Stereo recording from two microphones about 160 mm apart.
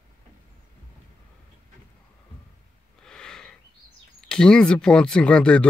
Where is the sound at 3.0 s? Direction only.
5° left (ahead or behind).